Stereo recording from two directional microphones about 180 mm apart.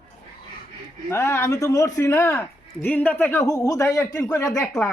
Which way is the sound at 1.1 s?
15° left (ahead or behind).